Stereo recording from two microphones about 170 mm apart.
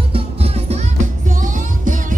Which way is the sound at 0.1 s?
35° right (ahead or behind).